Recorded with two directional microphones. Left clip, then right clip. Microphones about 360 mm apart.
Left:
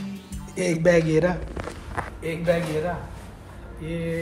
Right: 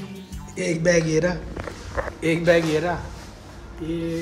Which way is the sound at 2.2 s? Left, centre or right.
Right.